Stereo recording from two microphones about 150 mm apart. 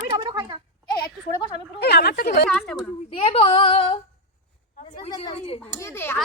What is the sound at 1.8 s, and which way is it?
Speech, 90° left.